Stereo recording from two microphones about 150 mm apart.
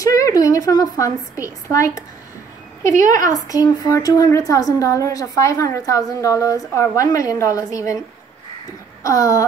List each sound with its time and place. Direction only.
0.0 s a woman's voice: 20° left (ahead or behind)
3.1 s a woman's voice: 25° left (ahead or behind)
9.0 s a woman's voice: 20° left (ahead or behind)